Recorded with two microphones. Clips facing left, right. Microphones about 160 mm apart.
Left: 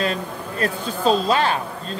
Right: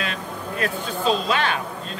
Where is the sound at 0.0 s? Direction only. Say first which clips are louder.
Left 5 dB; 35° left (ahead or behind).